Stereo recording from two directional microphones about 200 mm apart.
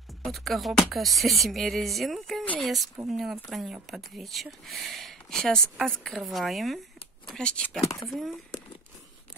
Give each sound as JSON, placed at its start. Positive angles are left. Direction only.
{"t": 0.2, "sound": "speech", "side_deg": 0}
{"t": 7.8, "sound": "speech", "side_deg": 15}
{"t": 8.1, "sound": "speech", "side_deg": 0}